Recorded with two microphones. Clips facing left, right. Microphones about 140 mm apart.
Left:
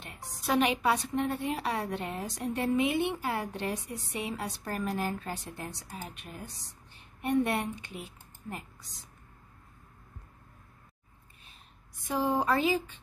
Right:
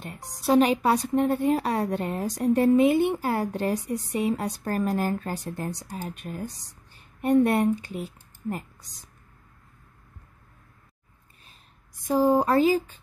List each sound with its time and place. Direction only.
0.0 s a woman's voice: 40° right (ahead or behind)
12.1 s a woman's voice: 40° right (ahead or behind)